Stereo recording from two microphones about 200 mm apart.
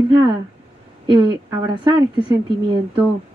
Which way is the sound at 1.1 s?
25° right (ahead or behind).